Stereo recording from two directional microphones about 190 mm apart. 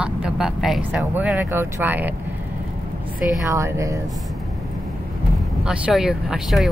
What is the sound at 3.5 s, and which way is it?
Speech, 15° right (ahead or behind).